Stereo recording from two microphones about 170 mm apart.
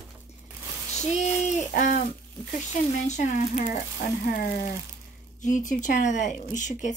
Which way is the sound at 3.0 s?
45° left (ahead or behind).